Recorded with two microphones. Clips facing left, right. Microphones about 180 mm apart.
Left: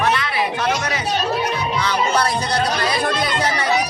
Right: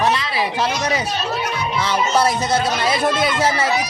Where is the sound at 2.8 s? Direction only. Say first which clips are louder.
Right 2 dB; 25° right (ahead or behind).